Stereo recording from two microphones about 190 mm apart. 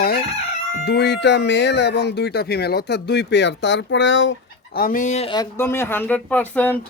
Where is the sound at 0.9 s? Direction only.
60° left (ahead or behind).